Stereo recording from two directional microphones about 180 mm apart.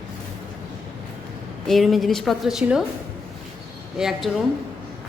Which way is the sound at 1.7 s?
Centre (ahead or behind).